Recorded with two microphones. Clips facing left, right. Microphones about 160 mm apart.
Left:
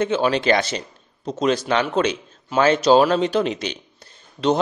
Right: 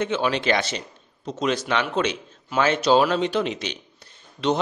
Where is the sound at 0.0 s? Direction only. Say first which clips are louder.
Left 4 dB; 35° left (ahead or behind).